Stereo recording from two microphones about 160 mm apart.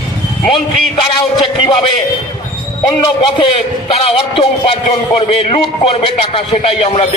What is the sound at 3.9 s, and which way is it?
A man's voice, 40° left (ahead or behind).